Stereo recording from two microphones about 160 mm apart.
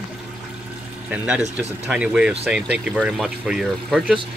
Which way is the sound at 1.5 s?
5° right (ahead or behind).